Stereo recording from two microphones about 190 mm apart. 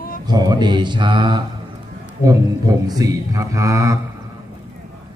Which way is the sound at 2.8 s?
20° right (ahead or behind).